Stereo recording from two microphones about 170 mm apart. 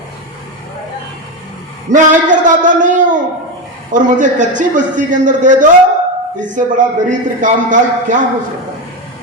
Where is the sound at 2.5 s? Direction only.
50° right (ahead or behind).